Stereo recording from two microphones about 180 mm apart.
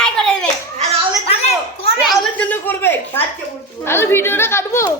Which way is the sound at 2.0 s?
5° left (ahead or behind).